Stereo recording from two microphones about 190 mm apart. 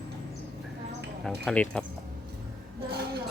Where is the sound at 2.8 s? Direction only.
55° right (ahead or behind).